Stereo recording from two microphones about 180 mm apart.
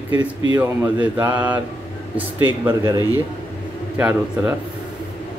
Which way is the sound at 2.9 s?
20° left (ahead or behind).